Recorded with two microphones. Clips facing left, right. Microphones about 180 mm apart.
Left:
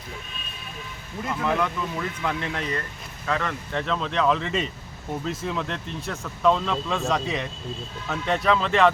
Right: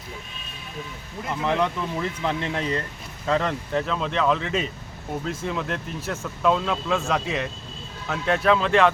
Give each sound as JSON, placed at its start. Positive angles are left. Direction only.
{"t": 1.4, "sound": "speech", "side_deg": -20}
{"t": 3.8, "sound": "speech", "side_deg": -5}